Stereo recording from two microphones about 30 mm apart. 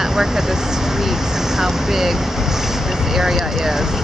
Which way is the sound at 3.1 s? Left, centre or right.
Centre.